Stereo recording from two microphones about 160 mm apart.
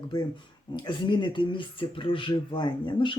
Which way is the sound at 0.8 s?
30° left (ahead or behind).